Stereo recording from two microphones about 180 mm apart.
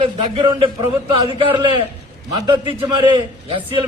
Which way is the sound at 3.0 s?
25° right (ahead or behind).